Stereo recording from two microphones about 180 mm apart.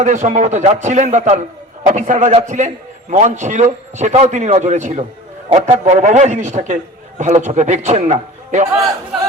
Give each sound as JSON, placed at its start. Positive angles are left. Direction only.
{"t": 0.0, "sound": "a man's voice", "side_deg": -45}